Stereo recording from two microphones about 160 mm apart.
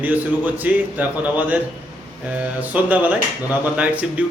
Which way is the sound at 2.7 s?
10° right (ahead or behind).